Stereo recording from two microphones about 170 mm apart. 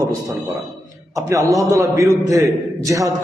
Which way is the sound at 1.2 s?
20° right (ahead or behind).